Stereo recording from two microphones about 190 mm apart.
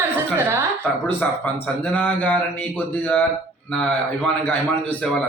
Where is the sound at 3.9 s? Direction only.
5° left (ahead or behind).